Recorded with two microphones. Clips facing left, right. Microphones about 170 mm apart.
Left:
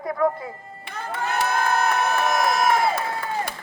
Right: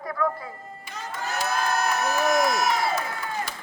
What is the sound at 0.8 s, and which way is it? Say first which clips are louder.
Speech: left 5 dB; 55° left (ahead or behind).